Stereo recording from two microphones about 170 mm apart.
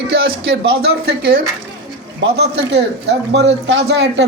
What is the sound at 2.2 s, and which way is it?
Speech, 90° right.